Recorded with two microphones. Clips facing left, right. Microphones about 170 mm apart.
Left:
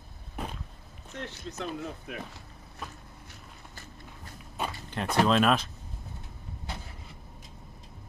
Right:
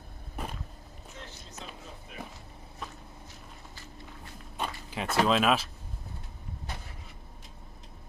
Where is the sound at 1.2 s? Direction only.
65° left (ahead or behind).